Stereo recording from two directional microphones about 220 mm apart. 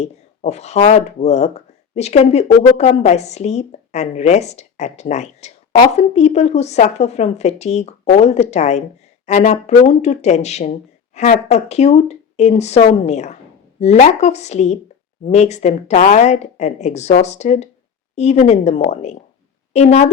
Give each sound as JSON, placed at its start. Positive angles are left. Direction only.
{"t": 0.0, "sound": "a woman's voice", "side_deg": 30}